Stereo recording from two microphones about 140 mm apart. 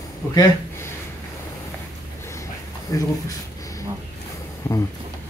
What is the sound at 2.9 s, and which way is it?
Speech, 25° left (ahead or behind).